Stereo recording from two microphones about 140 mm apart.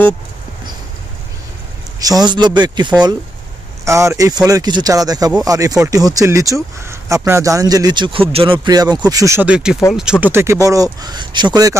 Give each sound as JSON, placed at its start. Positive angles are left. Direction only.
{"t": 2.0, "sound": "speech", "side_deg": -25}
{"t": 3.8, "sound": "speech", "side_deg": -20}
{"t": 8.6, "sound": "speech", "side_deg": -30}
{"t": 9.5, "sound": "speech", "side_deg": -5}
{"t": 10.2, "sound": "speech", "side_deg": -20}